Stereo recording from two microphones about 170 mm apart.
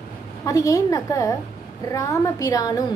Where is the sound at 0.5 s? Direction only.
20° left (ahead or behind).